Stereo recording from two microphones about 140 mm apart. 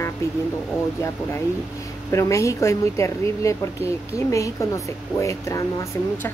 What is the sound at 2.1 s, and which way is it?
A woman's voice, 20° left (ahead or behind).